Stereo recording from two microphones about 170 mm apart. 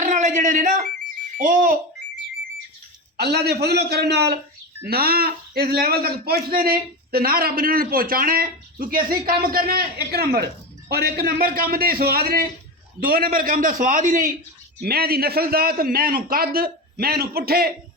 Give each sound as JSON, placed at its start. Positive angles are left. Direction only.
{"t": 0.0, "sound": "alarm", "side_deg": -45}
{"t": 3.2, "sound": "a man's voice", "side_deg": -75}
{"t": 4.9, "sound": "a man's voice", "side_deg": -65}
{"t": 14.8, "sound": "a man's voice", "side_deg": -65}